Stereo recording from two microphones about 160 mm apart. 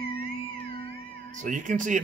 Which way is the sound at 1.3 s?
55° right (ahead or behind).